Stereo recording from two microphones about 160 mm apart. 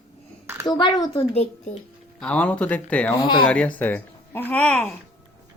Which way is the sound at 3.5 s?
10° left (ahead or behind).